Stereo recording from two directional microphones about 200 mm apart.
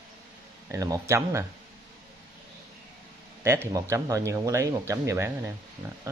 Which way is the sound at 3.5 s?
15° right (ahead or behind).